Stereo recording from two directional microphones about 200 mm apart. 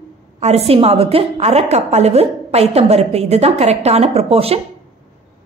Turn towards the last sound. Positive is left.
turn(degrees=-30)  # may be behind; listen again after turning